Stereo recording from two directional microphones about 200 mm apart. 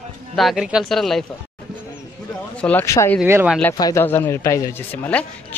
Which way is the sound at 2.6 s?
10° left (ahead or behind).